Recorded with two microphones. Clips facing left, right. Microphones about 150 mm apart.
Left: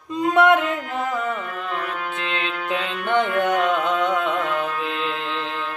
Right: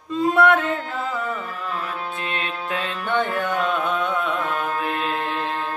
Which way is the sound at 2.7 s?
20° left (ahead or behind).